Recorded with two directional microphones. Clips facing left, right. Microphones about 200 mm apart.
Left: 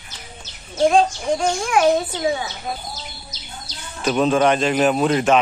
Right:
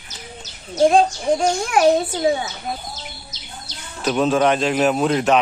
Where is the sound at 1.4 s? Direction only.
40° right (ahead or behind).